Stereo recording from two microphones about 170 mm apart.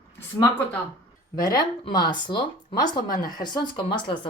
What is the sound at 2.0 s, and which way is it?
Speech, 25° left (ahead or behind).